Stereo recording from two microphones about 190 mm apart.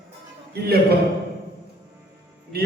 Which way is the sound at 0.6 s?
55° right (ahead or behind).